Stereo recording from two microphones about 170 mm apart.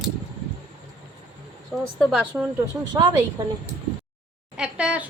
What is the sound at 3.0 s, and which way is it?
Speech, 20° right (ahead or behind).